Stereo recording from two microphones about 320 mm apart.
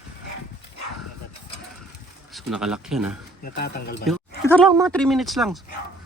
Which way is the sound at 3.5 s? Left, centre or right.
Left.